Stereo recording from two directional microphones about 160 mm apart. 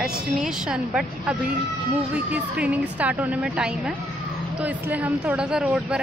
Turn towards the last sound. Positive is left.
turn(degrees=-5)  # may be behind; listen again after turning